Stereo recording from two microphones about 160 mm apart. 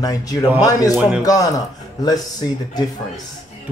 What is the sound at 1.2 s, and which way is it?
Speech, 20° left (ahead or behind).